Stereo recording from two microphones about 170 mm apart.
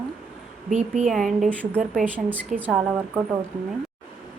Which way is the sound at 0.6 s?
45° right (ahead or behind).